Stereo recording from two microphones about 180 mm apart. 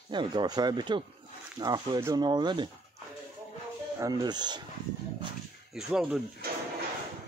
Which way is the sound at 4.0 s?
20° right (ahead or behind).